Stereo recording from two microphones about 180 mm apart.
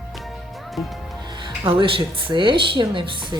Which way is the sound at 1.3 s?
25° right (ahead or behind).